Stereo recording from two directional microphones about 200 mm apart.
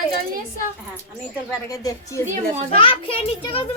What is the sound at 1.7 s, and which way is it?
Speech, 15° left (ahead or behind).